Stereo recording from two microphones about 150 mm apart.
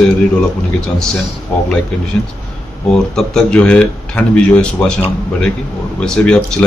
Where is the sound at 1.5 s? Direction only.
5° left (ahead or behind).